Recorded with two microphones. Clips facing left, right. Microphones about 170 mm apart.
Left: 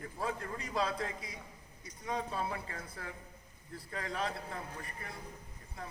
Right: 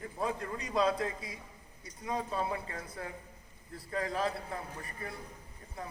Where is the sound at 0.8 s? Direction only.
25° right (ahead or behind).